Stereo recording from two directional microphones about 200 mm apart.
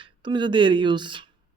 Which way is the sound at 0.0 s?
25° right (ahead or behind).